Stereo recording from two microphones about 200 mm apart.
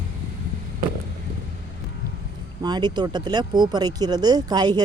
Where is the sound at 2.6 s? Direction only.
20° right (ahead or behind).